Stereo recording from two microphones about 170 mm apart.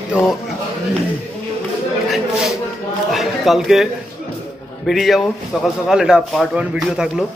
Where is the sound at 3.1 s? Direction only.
Centre (ahead or behind).